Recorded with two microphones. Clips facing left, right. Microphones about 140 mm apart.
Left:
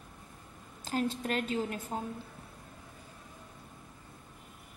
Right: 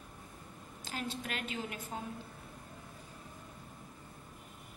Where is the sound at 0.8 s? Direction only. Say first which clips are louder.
Left 8 dB; 40° left (ahead or behind).